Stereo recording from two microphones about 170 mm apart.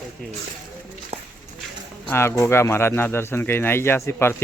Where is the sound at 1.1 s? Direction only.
35° right (ahead or behind).